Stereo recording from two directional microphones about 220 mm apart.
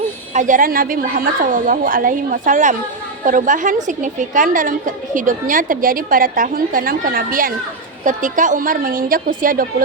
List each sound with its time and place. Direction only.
0.3 s a woman's voice: 35° right (ahead or behind)